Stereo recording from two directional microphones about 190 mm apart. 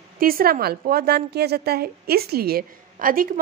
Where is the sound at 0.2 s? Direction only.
50° right (ahead or behind).